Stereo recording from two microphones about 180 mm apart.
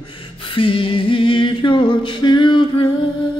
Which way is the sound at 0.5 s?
30° left (ahead or behind).